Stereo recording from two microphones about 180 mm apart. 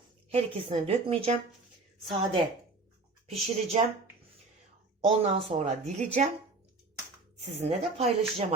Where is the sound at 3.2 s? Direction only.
35° right (ahead or behind).